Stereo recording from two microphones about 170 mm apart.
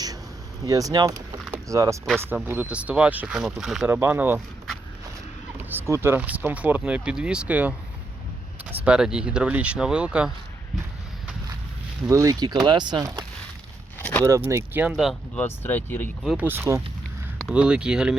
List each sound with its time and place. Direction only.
0.6 s speech: 20° right (ahead or behind)
1.5 s a sound: 20° right (ahead or behind)
2.2 s speech: 10° right (ahead or behind)
3.8 s speech: 15° right (ahead or behind)
5.5 s speech: 15° right (ahead or behind)
12.0 s speech: 20° right (ahead or behind)
14.0 s a sound: 10° left (ahead or behind)
14.3 s speech: 15° right (ahead or behind)
15.4 s speech: 10° left (ahead or behind)
16.2 s speech: centre (ahead or behind)
16.5 s speech: 15° right (ahead or behind)